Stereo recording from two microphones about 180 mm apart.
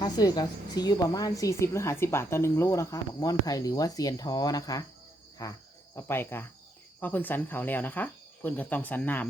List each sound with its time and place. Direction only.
0.0 s a woman's voice: 20° left (ahead or behind)
5.4 s cricket: 15° left (ahead or behind)
7.0 s speech: 10° left (ahead or behind)